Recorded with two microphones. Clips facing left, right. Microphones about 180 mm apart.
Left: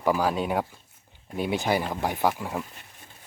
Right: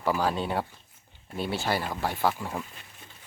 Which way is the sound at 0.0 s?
10° left (ahead or behind).